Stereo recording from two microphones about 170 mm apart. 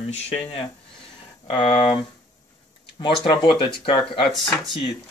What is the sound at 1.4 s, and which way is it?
Speech, 30° left (ahead or behind).